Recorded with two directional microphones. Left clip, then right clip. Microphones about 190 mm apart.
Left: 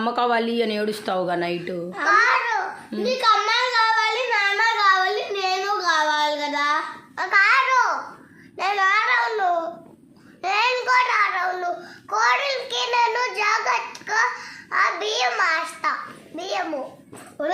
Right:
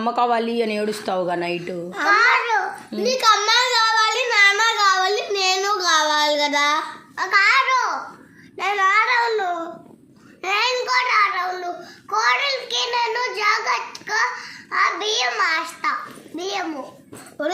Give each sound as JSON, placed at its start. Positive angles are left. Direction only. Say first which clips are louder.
{"t": 0.0, "sound": "a woman's voice", "louder": "right 2 dB", "side_deg": 0}
{"t": 2.0, "sound": "babbling", "louder": "right 2 dB", "side_deg": -5}
{"t": 3.0, "sound": "child singing", "louder": "right 2 dB", "side_deg": -30}
{"t": 7.2, "sound": "babbling", "louder": "right 1 dB", "side_deg": 10}
{"t": 8.5, "sound": "a sound", "louder": "right 2 dB", "side_deg": 10}
{"t": 10.4, "sound": "babbling", "louder": "even", "side_deg": 10}
{"t": 16.4, "sound": "a child's voice", "louder": "even", "side_deg": 15}
{"t": 17.4, "sound": "speech", "louder": "even", "side_deg": -10}